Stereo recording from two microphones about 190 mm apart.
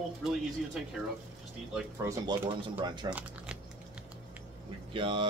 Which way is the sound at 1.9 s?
15° right (ahead or behind).